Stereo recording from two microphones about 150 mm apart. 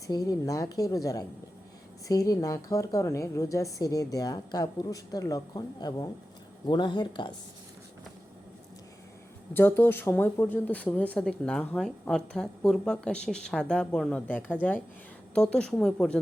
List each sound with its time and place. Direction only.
0.1 s a woman's voice: 25° left (ahead or behind)
9.5 s a woman's voice: 15° left (ahead or behind)